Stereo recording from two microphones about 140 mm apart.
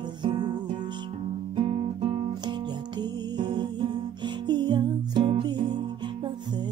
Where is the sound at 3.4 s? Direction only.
35° right (ahead or behind).